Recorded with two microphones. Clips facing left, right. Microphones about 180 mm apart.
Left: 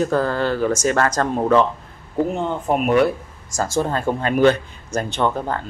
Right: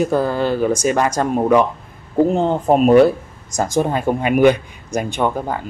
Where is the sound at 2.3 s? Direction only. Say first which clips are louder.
Right 6 dB; 30° right (ahead or behind).